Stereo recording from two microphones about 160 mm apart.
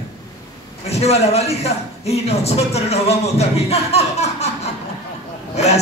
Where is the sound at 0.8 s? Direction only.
40° left (ahead or behind).